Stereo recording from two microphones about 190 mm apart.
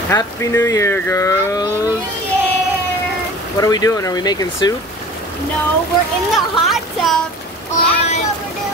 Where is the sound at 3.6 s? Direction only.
20° left (ahead or behind).